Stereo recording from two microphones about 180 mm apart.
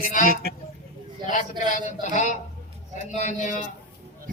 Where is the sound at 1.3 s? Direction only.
45° left (ahead or behind).